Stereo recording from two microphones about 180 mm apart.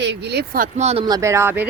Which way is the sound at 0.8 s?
35° right (ahead or behind).